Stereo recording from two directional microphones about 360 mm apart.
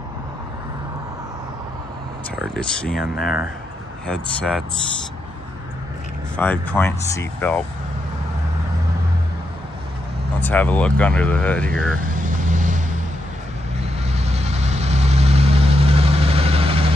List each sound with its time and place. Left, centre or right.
2.3 s speech: centre
6.3 s speech: centre
10.4 s speech: centre
12.3 s vehicle: right
14.1 s vehicle: centre